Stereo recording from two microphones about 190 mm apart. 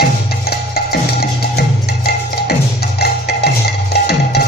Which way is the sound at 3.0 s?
60° left (ahead or behind).